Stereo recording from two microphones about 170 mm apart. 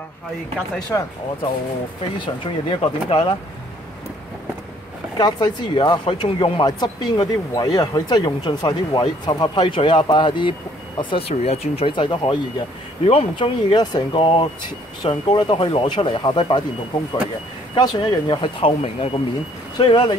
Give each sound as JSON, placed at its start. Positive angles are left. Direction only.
{"t": 2.1, "sound": "speech", "side_deg": 30}
{"t": 5.1, "sound": "speech", "side_deg": 25}
{"t": 17.7, "sound": "speech", "side_deg": 25}